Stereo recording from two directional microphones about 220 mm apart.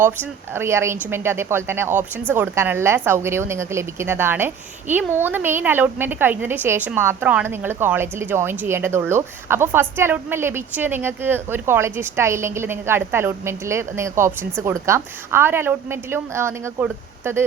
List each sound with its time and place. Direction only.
0.5 s a woman's voice: 10° right (ahead or behind)